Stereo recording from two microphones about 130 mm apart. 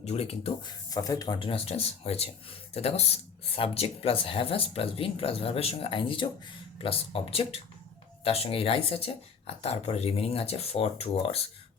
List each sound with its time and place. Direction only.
0.0 s speech: 55° left (ahead or behind)
0.6 s speech: 30° left (ahead or behind)
1.4 s speech: 45° left (ahead or behind)